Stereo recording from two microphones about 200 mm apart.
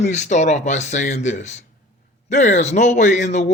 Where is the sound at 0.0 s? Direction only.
35° left (ahead or behind).